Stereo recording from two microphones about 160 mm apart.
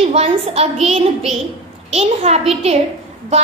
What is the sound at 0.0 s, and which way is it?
A woman's voice, 40° right (ahead or behind).